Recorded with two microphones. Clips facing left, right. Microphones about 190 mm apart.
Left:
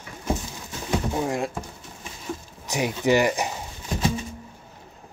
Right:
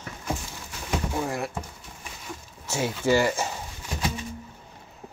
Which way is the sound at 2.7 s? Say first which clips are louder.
Left 2 dB; 15° left (ahead or behind).